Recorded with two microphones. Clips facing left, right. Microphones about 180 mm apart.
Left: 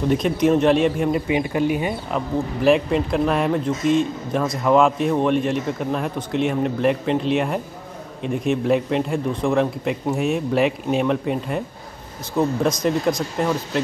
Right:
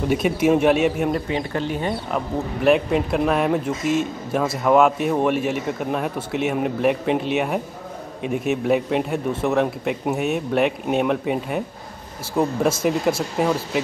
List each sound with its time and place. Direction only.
0.1 s speech: 5° right (ahead or behind)
1.1 s speech: 15° left (ahead or behind)
2.1 s speech: centre (ahead or behind)